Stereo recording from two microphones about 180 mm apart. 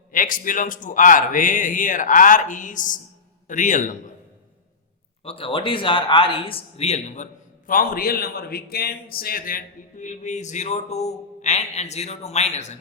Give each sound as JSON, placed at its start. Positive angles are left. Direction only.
{"t": 0.1, "sound": "a man's voice", "side_deg": 50}
{"t": 5.2, "sound": "a man's voice", "side_deg": 30}
{"t": 7.7, "sound": "a man's voice", "side_deg": 50}